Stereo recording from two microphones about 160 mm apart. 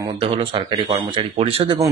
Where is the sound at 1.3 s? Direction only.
35° right (ahead or behind).